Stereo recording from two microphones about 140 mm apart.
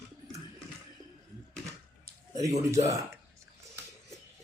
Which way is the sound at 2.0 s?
25° right (ahead or behind).